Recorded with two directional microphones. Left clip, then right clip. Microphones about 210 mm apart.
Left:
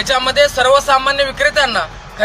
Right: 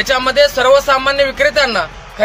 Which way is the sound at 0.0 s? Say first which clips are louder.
Right 1 dB; 15° right (ahead or behind).